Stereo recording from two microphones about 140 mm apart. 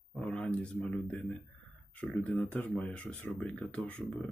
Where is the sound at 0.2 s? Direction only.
5° left (ahead or behind).